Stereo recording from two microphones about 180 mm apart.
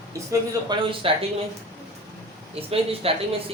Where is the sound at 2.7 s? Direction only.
30° right (ahead or behind).